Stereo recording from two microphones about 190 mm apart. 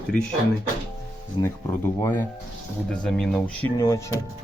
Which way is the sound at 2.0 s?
10° left (ahead or behind).